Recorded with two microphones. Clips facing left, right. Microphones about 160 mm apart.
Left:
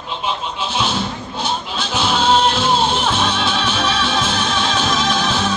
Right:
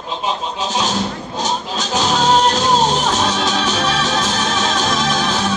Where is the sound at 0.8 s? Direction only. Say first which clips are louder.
Right 1 dB; 40° right (ahead or behind).